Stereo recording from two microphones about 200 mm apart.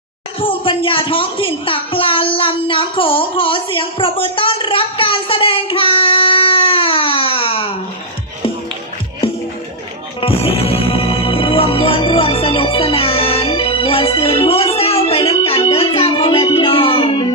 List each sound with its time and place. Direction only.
0.3 s a woman's voice: 25° left (ahead or behind)
10.2 s music: 30° left (ahead or behind)